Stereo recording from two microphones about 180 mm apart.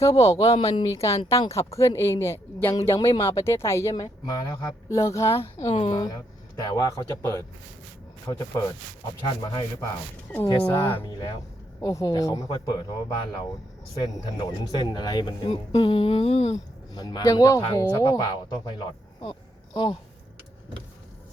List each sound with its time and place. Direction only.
0.2 s speech: 20° left (ahead or behind)
0.5 s speech: 30° left (ahead or behind)
5.6 s speech: 25° left (ahead or behind)
10.9 s speech: 25° left (ahead or behind)
16.9 s a man's voice: 20° left (ahead or behind)